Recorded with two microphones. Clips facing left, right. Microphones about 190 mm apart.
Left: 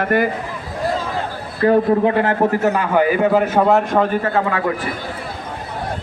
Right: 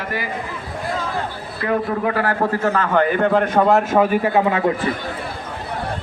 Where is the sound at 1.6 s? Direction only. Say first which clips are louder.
Left 7 dB; 30° left (ahead or behind); by 4.6 s 15° right (ahead or behind).